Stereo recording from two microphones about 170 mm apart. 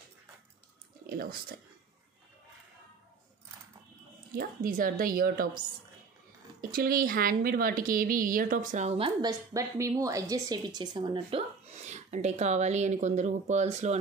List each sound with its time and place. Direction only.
1.0 s speech: 60° right (ahead or behind)
4.3 s a woman's voice: 55° right (ahead or behind)
6.6 s a woman's voice: 60° right (ahead or behind); by 9.3 s 35° right (ahead or behind)
9.3 s speech: 20° right (ahead or behind); by 13.9 s 40° right (ahead or behind)